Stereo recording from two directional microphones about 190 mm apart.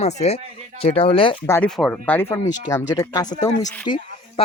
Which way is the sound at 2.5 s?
20° left (ahead or behind).